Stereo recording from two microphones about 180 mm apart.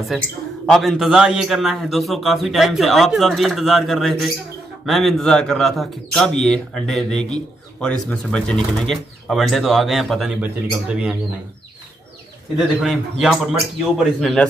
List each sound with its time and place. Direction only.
0.7 s speech: centre (ahead or behind)
12.5 s speech: centre (ahead or behind)